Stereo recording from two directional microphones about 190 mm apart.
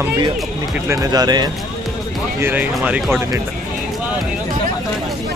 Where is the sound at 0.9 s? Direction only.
20° right (ahead or behind).